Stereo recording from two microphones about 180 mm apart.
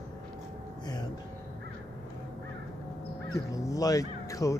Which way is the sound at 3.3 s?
20° left (ahead or behind).